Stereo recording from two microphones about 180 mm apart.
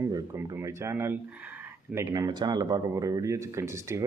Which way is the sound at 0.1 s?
15° right (ahead or behind).